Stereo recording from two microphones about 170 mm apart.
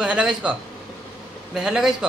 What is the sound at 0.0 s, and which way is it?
A man's voice, 5° right (ahead or behind).